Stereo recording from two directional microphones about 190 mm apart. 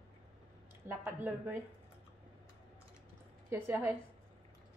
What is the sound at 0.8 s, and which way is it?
Speech, 10° right (ahead or behind).